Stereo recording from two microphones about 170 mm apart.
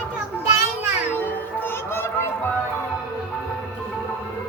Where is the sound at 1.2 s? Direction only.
10° left (ahead or behind).